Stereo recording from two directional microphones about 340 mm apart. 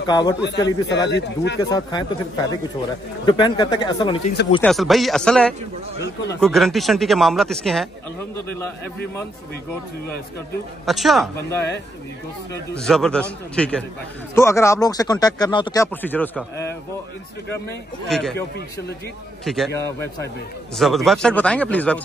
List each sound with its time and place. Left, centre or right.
0.0 s speech: centre
0.4 s speech: left
1.6 s speech: centre
3.3 s speech: centre
4.6 s speech: centre
10.9 s speech: centre
12.7 s speech: centre
18.0 s speech: centre
19.4 s speech: centre